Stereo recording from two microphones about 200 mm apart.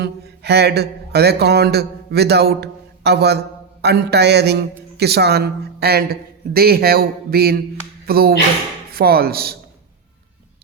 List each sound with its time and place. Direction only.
0.0 s speech: 55° right (ahead or behind)